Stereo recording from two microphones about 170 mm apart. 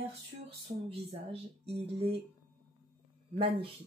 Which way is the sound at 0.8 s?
35° right (ahead or behind).